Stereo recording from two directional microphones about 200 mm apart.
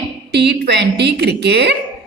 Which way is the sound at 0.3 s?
55° right (ahead or behind).